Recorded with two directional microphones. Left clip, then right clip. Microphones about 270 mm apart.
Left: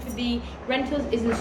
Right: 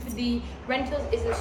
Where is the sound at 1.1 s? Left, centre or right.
Centre.